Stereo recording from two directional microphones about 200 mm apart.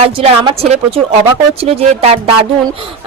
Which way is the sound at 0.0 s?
30° right (ahead or behind).